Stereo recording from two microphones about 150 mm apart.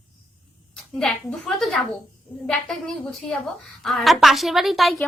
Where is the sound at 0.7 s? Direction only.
5° left (ahead or behind).